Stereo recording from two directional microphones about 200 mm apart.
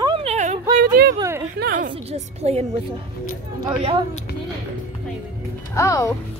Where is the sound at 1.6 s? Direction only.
45° right (ahead or behind).